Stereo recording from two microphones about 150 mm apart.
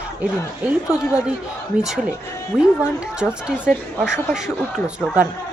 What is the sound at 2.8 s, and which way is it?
Speech, 5° right (ahead or behind).